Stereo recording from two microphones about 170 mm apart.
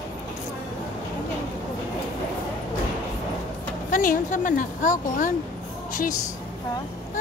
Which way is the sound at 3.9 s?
50° left (ahead or behind).